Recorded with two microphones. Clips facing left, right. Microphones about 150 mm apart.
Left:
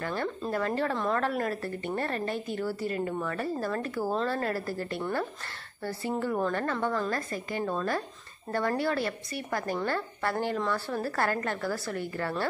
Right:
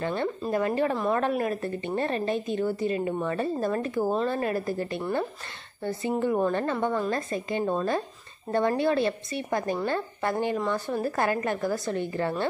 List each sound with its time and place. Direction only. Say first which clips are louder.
0.0 s a woman's voice: right 3 dB; 20° right (ahead or behind)